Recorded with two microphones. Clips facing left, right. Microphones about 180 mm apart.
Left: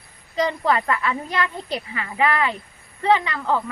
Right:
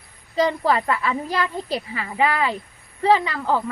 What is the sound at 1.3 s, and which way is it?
Speech, 35° right (ahead or behind).